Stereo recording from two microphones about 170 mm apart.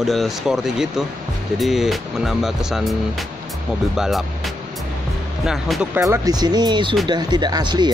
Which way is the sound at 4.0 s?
Centre (ahead or behind).